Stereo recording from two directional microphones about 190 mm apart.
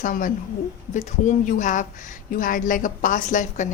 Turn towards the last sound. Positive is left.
turn(degrees=40)  # may be behind; listen again after turning